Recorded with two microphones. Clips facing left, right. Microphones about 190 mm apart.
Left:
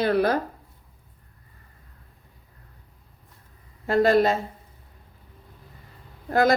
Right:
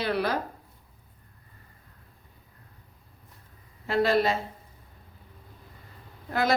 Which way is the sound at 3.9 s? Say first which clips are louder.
Left 5 dB; 45° left (ahead or behind).